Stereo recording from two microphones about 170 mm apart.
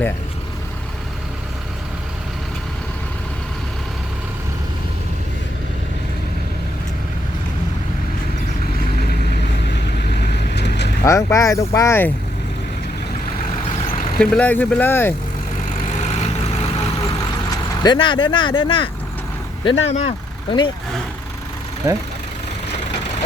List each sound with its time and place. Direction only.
10.2 s vehicle: 80° left
11.0 s speech: 15° left (ahead or behind)
14.2 s speech: 5° left (ahead or behind)
17.8 s speech: 30° left (ahead or behind)
21.8 s speech: 15° right (ahead or behind)